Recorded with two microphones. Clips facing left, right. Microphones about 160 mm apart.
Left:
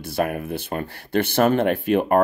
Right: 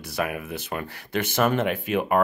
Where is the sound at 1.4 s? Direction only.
50° left (ahead or behind).